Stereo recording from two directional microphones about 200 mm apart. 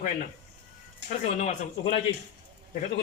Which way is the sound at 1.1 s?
35° left (ahead or behind).